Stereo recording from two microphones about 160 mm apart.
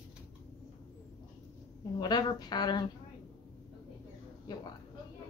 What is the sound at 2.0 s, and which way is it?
Speech, 25° left (ahead or behind).